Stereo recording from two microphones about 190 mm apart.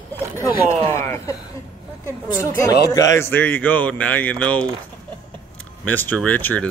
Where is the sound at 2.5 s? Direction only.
20° left (ahead or behind).